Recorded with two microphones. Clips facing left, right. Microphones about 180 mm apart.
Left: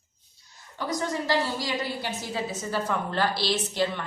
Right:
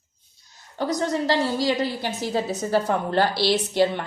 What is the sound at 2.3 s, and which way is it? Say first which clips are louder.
A woman's voice: right 8 dB; 40° right (ahead or behind).